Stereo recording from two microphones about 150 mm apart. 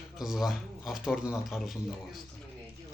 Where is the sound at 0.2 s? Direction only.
Centre (ahead or behind).